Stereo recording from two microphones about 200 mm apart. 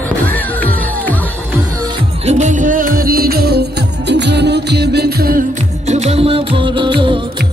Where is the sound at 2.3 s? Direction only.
35° right (ahead or behind).